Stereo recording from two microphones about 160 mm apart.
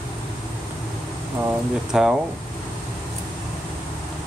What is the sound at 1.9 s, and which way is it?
Speech, 5° right (ahead or behind).